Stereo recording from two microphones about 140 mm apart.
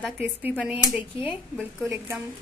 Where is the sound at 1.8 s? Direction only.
20° right (ahead or behind).